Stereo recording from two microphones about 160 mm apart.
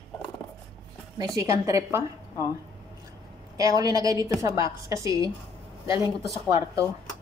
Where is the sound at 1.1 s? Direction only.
20° right (ahead or behind).